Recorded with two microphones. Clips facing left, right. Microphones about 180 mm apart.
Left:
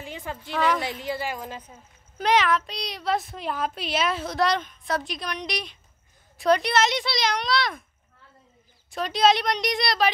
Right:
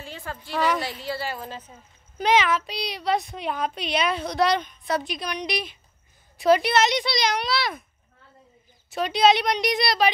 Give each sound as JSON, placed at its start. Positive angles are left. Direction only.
{"t": 0.0, "sound": "a sound", "side_deg": 15}
{"t": 0.8, "sound": "a woman's voice", "side_deg": 20}
{"t": 2.1, "sound": "a woman's voice", "side_deg": 0}
{"t": 8.9, "sound": "a woman's voice", "side_deg": 0}